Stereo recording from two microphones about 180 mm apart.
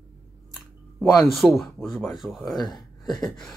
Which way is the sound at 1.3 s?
Centre (ahead or behind).